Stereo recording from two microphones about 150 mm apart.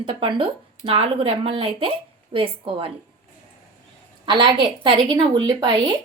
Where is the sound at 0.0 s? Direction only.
35° right (ahead or behind).